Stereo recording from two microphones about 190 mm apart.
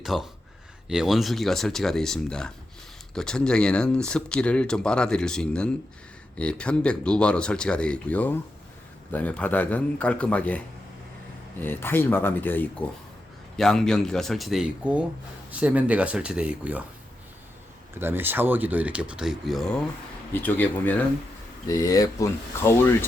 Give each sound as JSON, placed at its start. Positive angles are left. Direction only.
{"t": 0.0, "sound": "a man's voice", "side_deg": 0}
{"t": 11.6, "sound": "a man's voice", "side_deg": 10}
{"t": 18.0, "sound": "a man's voice", "side_deg": -10}